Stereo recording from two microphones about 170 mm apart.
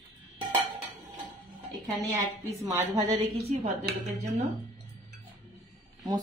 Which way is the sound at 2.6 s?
20° right (ahead or behind).